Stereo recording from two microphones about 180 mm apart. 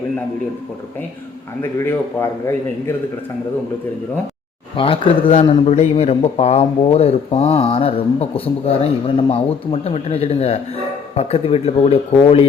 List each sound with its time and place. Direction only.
4.8 s speech: 30° left (ahead or behind)